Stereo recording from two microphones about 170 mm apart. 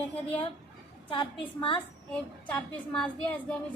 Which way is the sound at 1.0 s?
30° left (ahead or behind).